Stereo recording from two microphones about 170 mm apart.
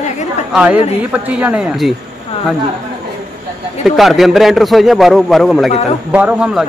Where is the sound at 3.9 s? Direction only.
Centre (ahead or behind).